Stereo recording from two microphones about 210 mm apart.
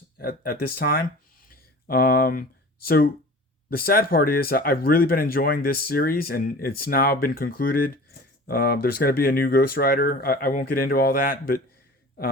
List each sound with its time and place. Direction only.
0.2 s speech: 45° left (ahead or behind)
1.5 s a sound: 45° left (ahead or behind)
2.8 s speech: 45° left (ahead or behind)